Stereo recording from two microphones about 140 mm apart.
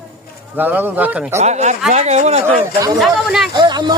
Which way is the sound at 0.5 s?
15° right (ahead or behind).